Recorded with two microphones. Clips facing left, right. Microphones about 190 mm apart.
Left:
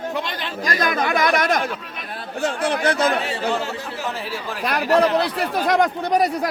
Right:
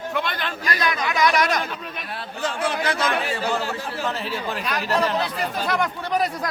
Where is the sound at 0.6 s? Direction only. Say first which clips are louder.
Left 4 dB; 45° left (ahead or behind).